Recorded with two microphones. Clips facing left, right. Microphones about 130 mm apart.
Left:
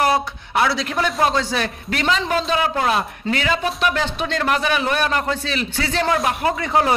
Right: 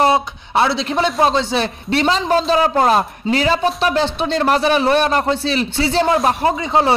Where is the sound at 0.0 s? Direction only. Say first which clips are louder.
Right 4 dB; 25° right (ahead or behind).